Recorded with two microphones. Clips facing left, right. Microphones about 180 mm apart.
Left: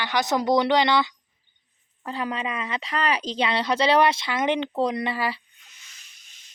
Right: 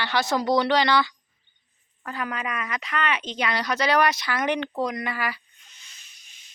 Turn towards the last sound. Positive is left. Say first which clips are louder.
# left 3 dB
turn(degrees=30)  # may be behind; listen again after turning